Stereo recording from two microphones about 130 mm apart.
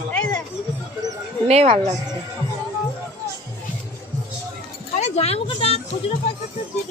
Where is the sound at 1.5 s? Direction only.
50° right (ahead or behind).